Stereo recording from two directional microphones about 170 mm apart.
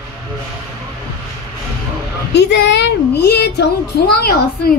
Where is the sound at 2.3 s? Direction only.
85° left.